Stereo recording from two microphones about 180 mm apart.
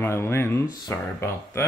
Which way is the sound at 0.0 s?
15° left (ahead or behind).